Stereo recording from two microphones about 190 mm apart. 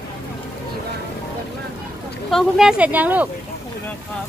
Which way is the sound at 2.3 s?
Centre (ahead or behind).